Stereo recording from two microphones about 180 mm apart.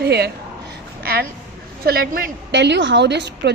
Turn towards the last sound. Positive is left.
turn(degrees=-70)  # may be behind; listen again after turning